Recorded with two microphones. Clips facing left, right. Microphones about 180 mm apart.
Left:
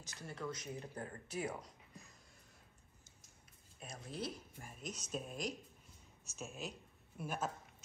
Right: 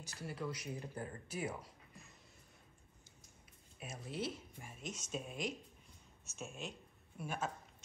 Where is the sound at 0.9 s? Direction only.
35° left (ahead or behind).